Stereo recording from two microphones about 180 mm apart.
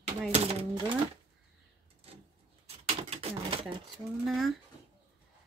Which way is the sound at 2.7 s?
35° right (ahead or behind).